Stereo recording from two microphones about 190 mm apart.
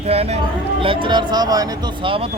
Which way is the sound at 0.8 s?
25° right (ahead or behind).